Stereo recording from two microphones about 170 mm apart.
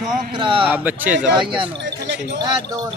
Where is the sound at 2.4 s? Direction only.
25° right (ahead or behind).